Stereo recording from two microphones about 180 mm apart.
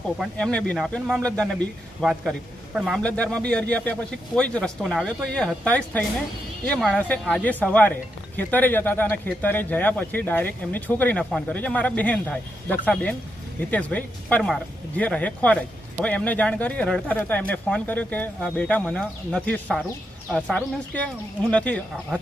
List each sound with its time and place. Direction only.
0.2 s speech: 5° left (ahead or behind)